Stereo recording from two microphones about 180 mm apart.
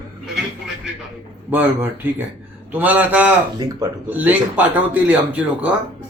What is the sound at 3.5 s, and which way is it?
Speech, 20° right (ahead or behind).